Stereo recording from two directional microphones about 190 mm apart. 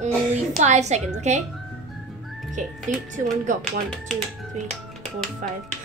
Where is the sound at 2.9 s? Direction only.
40° right (ahead or behind).